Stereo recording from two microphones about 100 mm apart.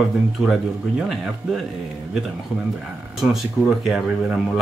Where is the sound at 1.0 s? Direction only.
Centre (ahead or behind).